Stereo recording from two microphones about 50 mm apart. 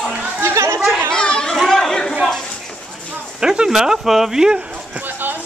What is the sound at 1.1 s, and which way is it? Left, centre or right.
Children playing, centre.